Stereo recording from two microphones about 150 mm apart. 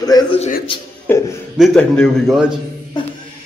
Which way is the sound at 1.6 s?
5° left (ahead or behind).